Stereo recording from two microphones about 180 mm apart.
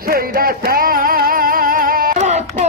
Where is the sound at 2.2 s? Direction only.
40° right (ahead or behind).